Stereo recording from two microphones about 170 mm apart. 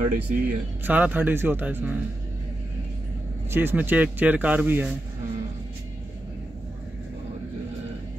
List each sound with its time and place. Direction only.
0.0 s speech: 55° right (ahead or behind)
0.8 s speech: 10° right (ahead or behind)
3.4 s speech: 10° right (ahead or behind)